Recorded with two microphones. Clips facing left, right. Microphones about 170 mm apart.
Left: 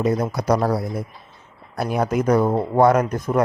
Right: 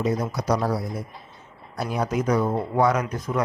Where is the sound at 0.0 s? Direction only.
55° left (ahead or behind).